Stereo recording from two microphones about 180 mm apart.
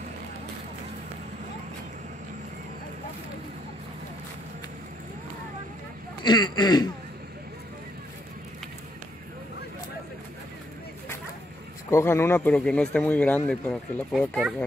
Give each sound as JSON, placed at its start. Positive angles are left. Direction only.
{"t": 6.2, "sound": "speech", "side_deg": 25}
{"t": 11.9, "sound": "speech", "side_deg": 15}